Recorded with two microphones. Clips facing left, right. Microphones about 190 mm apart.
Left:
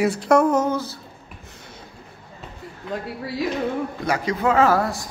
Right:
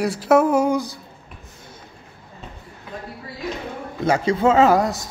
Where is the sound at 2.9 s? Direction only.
90° left.